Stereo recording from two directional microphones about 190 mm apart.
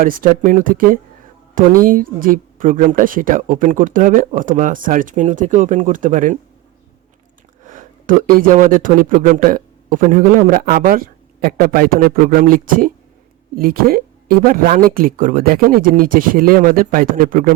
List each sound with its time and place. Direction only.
0.0 s speech: 45° right (ahead or behind)
7.6 s speech: 45° right (ahead or behind)